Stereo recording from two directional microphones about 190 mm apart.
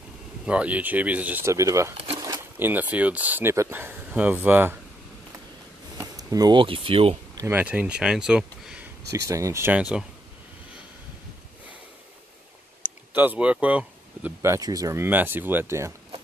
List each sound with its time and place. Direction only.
0.5 s speech: 5° right (ahead or behind)
5.9 s speech: 20° right (ahead or behind)
7.3 s speech: 10° right (ahead or behind)
9.1 s speech: 15° right (ahead or behind)
13.1 s speech: 10° right (ahead or behind)